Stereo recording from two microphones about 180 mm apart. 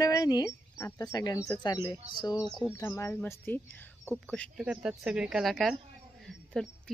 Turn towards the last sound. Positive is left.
turn(degrees=5)  # may be behind; listen again after turning